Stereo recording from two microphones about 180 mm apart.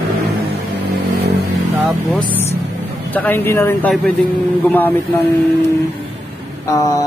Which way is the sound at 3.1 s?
10° left (ahead or behind).